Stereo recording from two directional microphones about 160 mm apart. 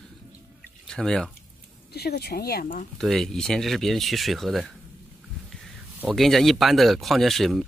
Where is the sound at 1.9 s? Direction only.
80° left; by 2.9 s 60° left (ahead or behind).